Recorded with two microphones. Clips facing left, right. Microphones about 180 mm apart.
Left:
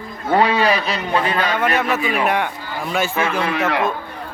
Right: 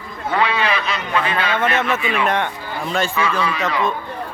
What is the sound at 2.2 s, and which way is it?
Speech, 5° left (ahead or behind).